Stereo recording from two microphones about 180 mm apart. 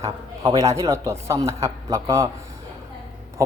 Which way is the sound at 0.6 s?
15° right (ahead or behind).